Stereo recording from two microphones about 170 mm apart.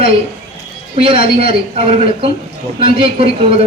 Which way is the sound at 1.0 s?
35° right (ahead or behind).